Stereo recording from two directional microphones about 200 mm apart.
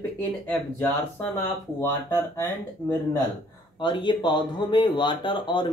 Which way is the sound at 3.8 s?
25° left (ahead or behind).